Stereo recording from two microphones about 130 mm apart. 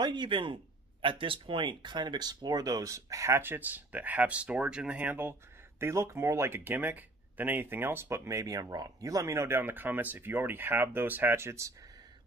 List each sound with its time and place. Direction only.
0.0 s a man's voice: 35° right (ahead or behind)